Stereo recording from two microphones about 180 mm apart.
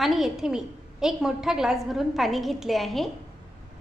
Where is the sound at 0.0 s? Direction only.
Centre (ahead or behind).